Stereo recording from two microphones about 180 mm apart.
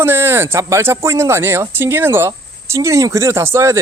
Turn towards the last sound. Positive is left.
turn(degrees=-15)  # may be behind; listen again after turning